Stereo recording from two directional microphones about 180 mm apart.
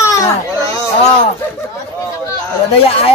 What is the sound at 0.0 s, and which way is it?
Baby cry, 20° left (ahead or behind).